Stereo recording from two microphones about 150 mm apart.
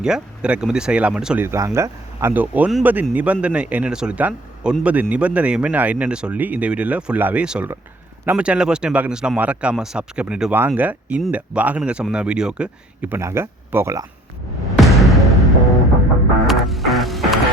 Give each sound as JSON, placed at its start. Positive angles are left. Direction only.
{"t": 0.0, "sound": "speech", "side_deg": -5}
{"t": 1.5, "sound": "speech", "side_deg": -20}
{"t": 14.8, "sound": "music", "side_deg": 0}